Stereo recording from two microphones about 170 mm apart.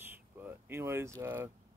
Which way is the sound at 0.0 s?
10° right (ahead or behind).